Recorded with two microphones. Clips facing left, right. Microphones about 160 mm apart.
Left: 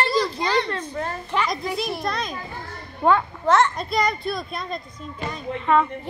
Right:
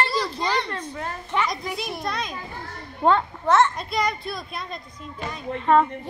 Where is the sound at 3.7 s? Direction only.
5° right (ahead or behind).